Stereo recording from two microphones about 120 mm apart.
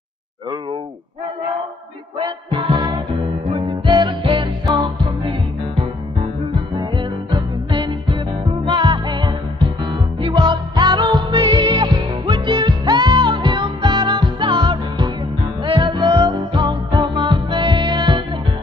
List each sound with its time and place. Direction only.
2.1 s music: 40° right (ahead or behind)
6.7 s music: 40° right (ahead or behind)